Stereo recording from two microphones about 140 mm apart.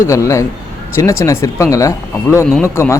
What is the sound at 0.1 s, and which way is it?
A man's voice, 20° left (ahead or behind).